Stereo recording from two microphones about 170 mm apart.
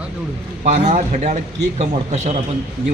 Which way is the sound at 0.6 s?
40° right (ahead or behind).